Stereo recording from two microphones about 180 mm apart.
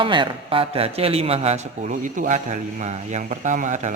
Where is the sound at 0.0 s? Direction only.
25° right (ahead or behind).